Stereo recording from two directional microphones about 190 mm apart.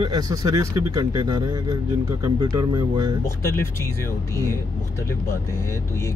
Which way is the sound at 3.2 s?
15° left (ahead or behind).